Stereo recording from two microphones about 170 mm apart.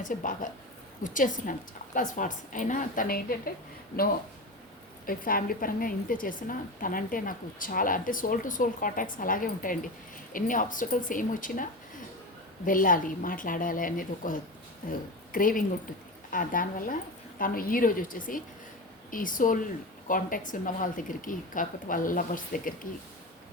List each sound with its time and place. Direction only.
0.0 s a woman's voice: 50° left (ahead or behind)
5.0 s a woman's voice: 55° left (ahead or behind)
12.6 s a woman's voice: 55° left (ahead or behind)